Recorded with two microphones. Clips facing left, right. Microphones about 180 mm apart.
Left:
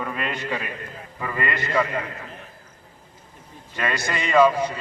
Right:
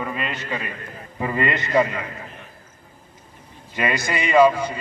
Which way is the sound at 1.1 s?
20° right (ahead or behind).